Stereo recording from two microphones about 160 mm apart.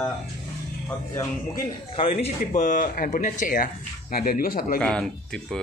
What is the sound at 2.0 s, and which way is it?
Speech, 40° left (ahead or behind).